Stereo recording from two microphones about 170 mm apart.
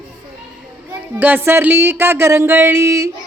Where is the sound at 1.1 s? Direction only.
10° right (ahead or behind).